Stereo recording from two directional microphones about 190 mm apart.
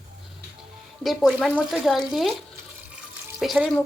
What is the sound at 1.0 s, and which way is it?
A woman's voice, centre (ahead or behind).